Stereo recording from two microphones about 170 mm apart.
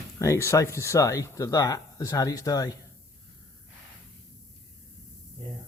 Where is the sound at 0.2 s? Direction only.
15° left (ahead or behind).